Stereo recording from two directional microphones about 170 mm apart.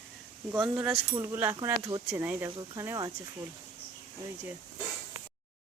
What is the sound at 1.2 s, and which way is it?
Speech, 15° right (ahead or behind).